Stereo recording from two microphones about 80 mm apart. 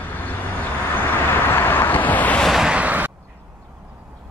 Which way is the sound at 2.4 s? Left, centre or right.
Centre.